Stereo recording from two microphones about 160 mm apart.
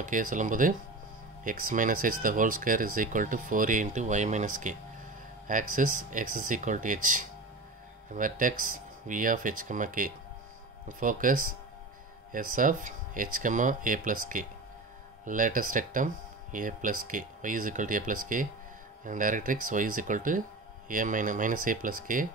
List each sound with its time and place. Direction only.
0.0 s speech: 55° right (ahead or behind)